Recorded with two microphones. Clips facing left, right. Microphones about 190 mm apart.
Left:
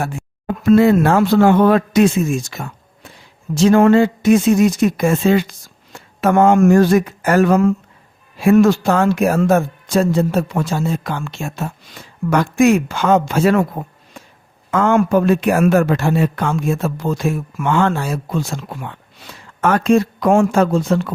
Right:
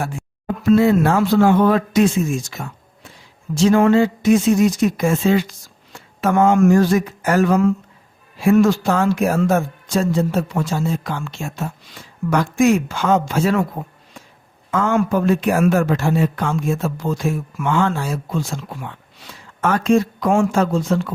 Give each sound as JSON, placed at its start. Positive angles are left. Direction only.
{"t": 0.0, "sound": "speech", "side_deg": 55}
{"t": 14.7, "sound": "speech", "side_deg": 60}